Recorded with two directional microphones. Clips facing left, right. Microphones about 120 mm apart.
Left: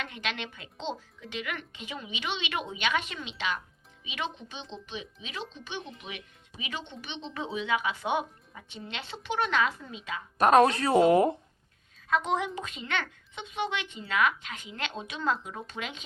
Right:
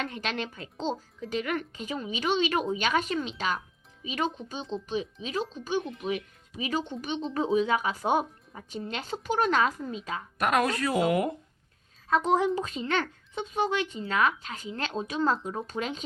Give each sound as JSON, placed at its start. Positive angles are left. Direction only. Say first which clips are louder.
{"t": 0.0, "sound": "speech", "louder": "right 3 dB", "side_deg": -35}
{"t": 10.3, "sound": "speech", "louder": "left 6 dB", "side_deg": 30}
{"t": 12.0, "sound": "speech", "louder": "right 4 dB", "side_deg": -35}